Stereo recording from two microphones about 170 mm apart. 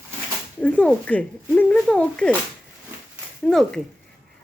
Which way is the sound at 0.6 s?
10° left (ahead or behind).